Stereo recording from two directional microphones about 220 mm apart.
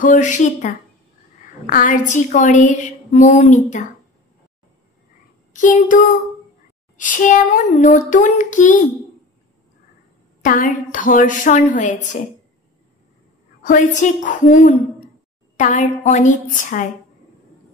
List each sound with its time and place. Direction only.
0.0 s a woman's voice: 35° left (ahead or behind)
5.5 s a sound: 35° left (ahead or behind)
7.0 s a woman's voice: 35° left (ahead or behind)
10.4 s a woman's voice: 35° left (ahead or behind)
13.6 s a woman's voice: 35° left (ahead or behind)